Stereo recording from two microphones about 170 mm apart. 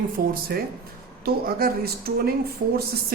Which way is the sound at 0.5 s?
65° right (ahead or behind).